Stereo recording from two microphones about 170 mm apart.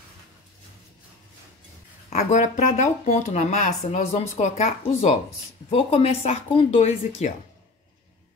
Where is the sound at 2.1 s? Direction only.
45° left (ahead or behind).